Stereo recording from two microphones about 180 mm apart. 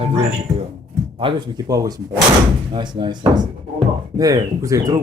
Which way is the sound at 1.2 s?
30° right (ahead or behind).